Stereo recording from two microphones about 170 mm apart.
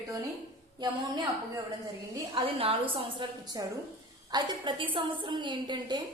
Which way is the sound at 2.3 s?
30° right (ahead or behind).